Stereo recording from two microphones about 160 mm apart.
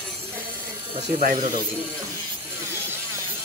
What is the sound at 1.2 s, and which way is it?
Speech, 60° right (ahead or behind).